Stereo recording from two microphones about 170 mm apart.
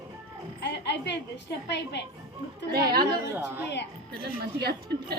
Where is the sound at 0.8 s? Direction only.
90° left.